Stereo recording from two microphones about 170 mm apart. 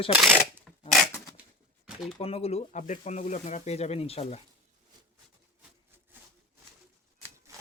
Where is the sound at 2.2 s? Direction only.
35° left (ahead or behind).